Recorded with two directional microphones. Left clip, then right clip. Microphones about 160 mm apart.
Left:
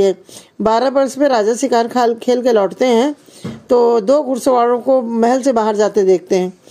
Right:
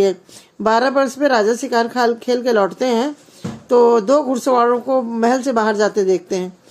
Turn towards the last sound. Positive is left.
turn(degrees=35)  # may be behind; listen again after turning